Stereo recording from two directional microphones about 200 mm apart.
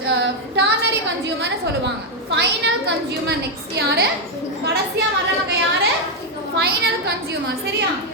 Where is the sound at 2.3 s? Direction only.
60° right (ahead or behind).